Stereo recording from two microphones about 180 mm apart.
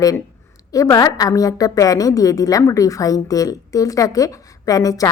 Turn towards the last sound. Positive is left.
turn(degrees=20)  # may be behind; listen again after turning